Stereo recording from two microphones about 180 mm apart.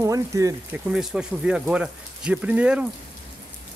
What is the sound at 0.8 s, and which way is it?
Speech, 5° right (ahead or behind).